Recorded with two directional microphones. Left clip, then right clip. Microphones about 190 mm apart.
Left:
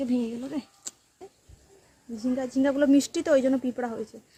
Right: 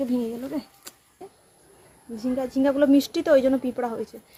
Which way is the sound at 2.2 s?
20° left (ahead or behind).